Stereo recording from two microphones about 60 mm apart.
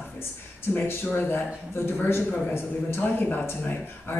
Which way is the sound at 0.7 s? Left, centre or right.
Left.